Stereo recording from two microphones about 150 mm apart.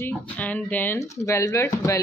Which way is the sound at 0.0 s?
10° left (ahead or behind).